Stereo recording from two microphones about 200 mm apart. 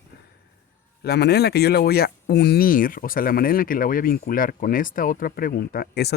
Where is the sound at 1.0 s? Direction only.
55° left (ahead or behind).